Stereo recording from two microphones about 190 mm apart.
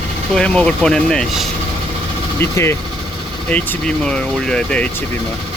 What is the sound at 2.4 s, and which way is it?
Speech, 15° left (ahead or behind).